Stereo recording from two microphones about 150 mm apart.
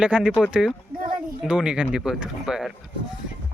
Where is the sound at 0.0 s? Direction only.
5° right (ahead or behind).